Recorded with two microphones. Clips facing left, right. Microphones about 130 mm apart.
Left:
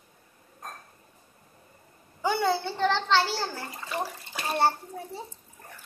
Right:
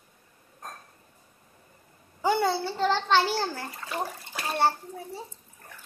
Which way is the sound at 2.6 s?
10° right (ahead or behind).